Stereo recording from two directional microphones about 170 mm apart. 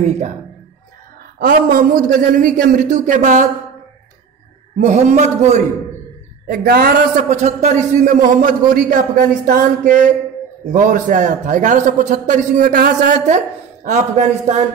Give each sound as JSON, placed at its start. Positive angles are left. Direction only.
{"t": 1.4, "sound": "a man's voice", "side_deg": -60}
{"t": 4.8, "sound": "a man's voice", "side_deg": -45}
{"t": 6.4, "sound": "a woman's voice", "side_deg": -60}
{"t": 7.2, "sound": "a man's voice", "side_deg": -45}